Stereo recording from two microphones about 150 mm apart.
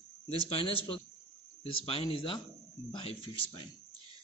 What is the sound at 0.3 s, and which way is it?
Speech, 40° left (ahead or behind).